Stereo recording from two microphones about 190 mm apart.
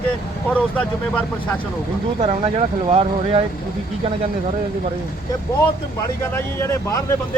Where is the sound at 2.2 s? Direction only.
30° right (ahead or behind).